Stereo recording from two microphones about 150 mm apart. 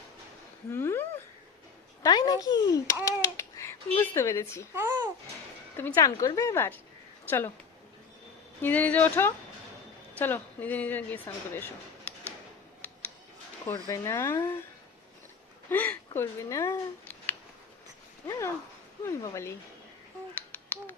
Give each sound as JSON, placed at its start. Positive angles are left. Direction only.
{"t": 0.7, "sound": "a sound", "side_deg": 15}
{"t": 2.0, "sound": "speech", "side_deg": 25}
{"t": 4.7, "sound": "a child's voice", "side_deg": -20}
{"t": 5.7, "sound": "a woman's voice", "side_deg": 15}
{"t": 8.6, "sound": "a woman's voice", "side_deg": 10}
{"t": 13.7, "sound": "speech", "side_deg": 25}
{"t": 15.7, "sound": "a woman's voice", "side_deg": 15}
{"t": 18.3, "sound": "speech", "side_deg": 20}
{"t": 20.5, "sound": "a sound", "side_deg": 15}